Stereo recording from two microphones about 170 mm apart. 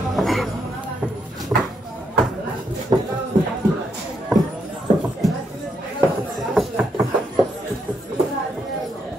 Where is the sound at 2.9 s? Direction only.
25° right (ahead or behind).